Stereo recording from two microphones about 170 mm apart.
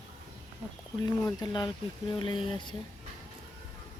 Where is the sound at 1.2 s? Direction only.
25° left (ahead or behind).